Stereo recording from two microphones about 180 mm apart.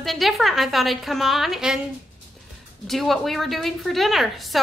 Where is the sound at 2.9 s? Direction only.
Centre (ahead or behind).